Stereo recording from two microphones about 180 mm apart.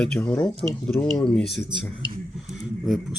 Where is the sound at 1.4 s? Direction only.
65° left (ahead or behind).